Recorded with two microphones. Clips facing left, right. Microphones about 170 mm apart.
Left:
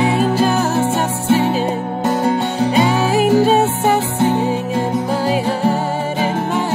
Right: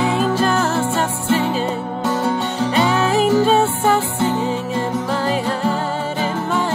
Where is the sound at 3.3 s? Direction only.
15° left (ahead or behind).